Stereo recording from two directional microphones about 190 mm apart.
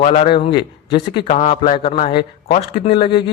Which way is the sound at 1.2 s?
35° left (ahead or behind).